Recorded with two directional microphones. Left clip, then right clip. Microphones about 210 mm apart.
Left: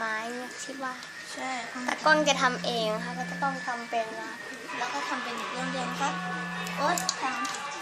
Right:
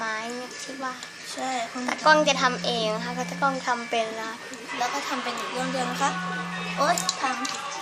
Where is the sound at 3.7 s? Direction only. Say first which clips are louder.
Right 7 dB; 15° right (ahead or behind).